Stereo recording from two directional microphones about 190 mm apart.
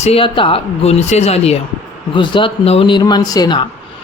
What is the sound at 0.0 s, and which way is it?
Speech, 30° left (ahead or behind).